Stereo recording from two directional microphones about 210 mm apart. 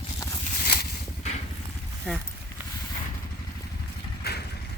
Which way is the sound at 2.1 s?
5° left (ahead or behind).